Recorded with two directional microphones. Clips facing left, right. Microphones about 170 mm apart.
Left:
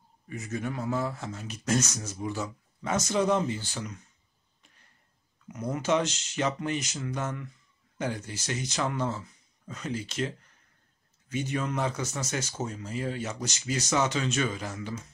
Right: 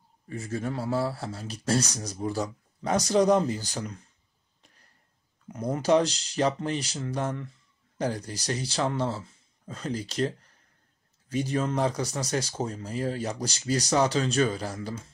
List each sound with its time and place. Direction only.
0.3 s speech: 30° right (ahead or behind)
5.5 s speech: 35° right (ahead or behind)